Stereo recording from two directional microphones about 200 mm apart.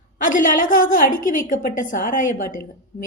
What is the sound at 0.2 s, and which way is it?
A woman's voice, 40° left (ahead or behind).